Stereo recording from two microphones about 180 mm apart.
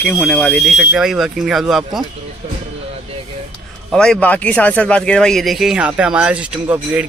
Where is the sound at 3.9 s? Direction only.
5° left (ahead or behind).